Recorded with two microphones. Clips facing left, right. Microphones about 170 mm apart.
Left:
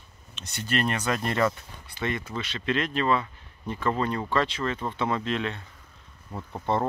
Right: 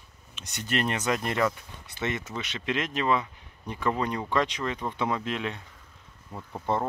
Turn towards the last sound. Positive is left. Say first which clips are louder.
# left 2 dB
turn(degrees=-5)  # may be behind; listen again after turning